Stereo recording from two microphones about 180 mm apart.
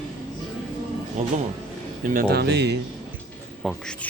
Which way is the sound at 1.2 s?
45° right (ahead or behind).